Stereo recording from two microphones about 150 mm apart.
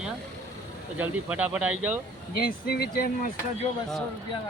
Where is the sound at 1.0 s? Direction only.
10° right (ahead or behind).